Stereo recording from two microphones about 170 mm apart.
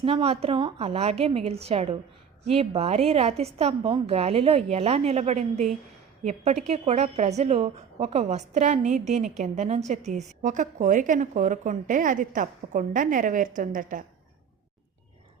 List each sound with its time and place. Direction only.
0.0 s a woman's voice: 35° right (ahead or behind); by 14.0 s 50° right (ahead or behind)